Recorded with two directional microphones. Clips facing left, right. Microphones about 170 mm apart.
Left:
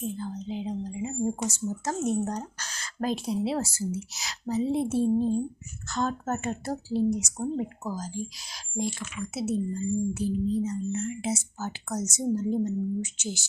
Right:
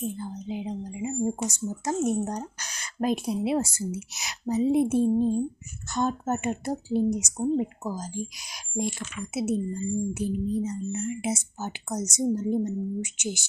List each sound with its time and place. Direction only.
0.2 s speech: 15° right (ahead or behind)